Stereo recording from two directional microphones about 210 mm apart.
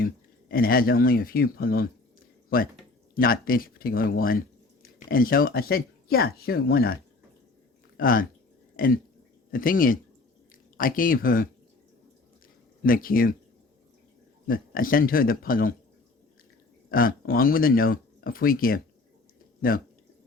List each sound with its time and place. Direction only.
0.0 s speech: 45° left (ahead or behind)
8.7 s a sound: 45° left (ahead or behind)
9.5 s speech: 40° left (ahead or behind)
12.8 s speech: 45° left (ahead or behind)
14.4 s speech: 40° left (ahead or behind)
16.9 s speech: 45° left (ahead or behind)